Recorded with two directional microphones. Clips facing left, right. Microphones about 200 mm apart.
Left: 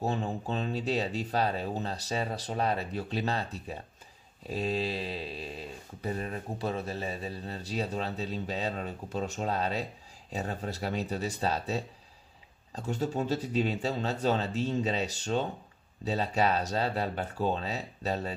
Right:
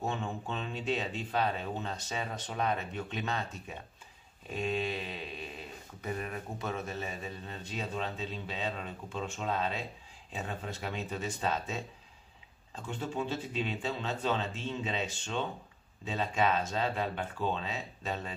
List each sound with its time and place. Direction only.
0.0 s speech: 35° left (ahead or behind)